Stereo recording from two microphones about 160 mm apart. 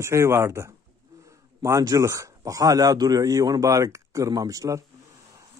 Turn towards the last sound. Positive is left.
turn(degrees=-20)  # may be behind; listen again after turning